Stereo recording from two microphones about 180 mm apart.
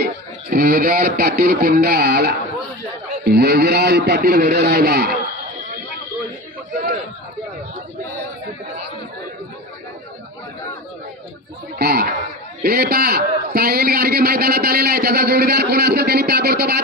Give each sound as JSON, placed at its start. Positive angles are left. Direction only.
{"t": 0.0, "sound": "a man's voice", "side_deg": -60}
{"t": 11.8, "sound": "a man's voice", "side_deg": -60}